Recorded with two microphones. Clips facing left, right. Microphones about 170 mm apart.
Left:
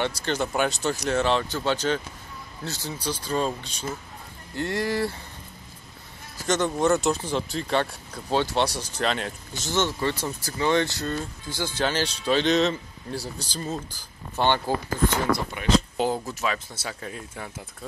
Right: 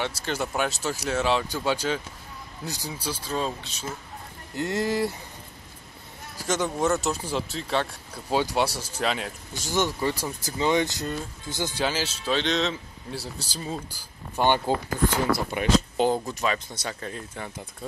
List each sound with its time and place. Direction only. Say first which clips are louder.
0.0 s speech: left 3 dB; 5° right (ahead or behind)
4.6 s speech: even; 20° right (ahead or behind)
6.4 s speech: left 2 dB; 5° right (ahead or behind)
11.8 s speech: left 3 dB; 5° right (ahead or behind)
16.0 s speech: right 2 dB; 5° left (ahead or behind)